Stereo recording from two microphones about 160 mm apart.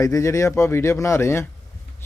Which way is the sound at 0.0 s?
20° left (ahead or behind).